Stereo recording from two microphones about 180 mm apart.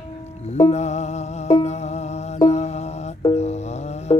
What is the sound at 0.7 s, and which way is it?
Music, 40° left (ahead or behind).